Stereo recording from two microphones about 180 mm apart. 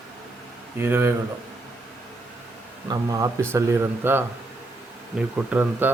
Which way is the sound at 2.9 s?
20° right (ahead or behind).